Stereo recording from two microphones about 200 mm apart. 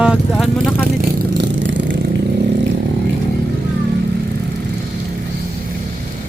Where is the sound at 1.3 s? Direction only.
65° right (ahead or behind).